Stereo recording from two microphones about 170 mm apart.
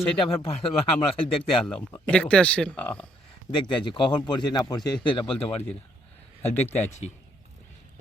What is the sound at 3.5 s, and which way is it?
A man's voice, 30° left (ahead or behind).